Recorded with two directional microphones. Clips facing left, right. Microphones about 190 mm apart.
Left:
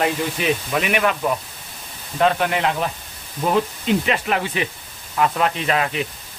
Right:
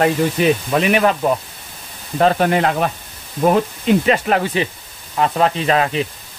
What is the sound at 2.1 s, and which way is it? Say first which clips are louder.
Speech: right 4 dB; 40° right (ahead or behind).